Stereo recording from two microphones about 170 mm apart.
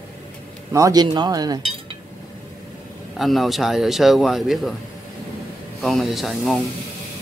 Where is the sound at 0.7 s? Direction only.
20° right (ahead or behind).